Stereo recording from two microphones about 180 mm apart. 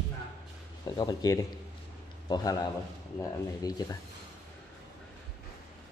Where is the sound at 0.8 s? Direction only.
20° left (ahead or behind).